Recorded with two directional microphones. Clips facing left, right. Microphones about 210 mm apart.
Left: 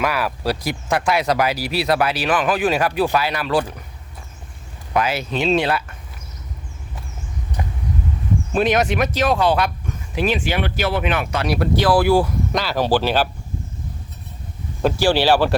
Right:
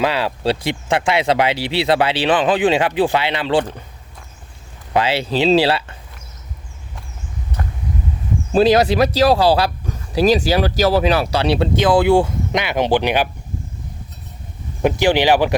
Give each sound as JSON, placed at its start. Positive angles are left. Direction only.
{"t": 0.0, "sound": "speech", "side_deg": -25}
{"t": 4.9, "sound": "speech", "side_deg": -30}
{"t": 7.6, "sound": "vehicle", "side_deg": 10}
{"t": 8.5, "sound": "speech", "side_deg": -35}
{"t": 14.8, "sound": "speech", "side_deg": -15}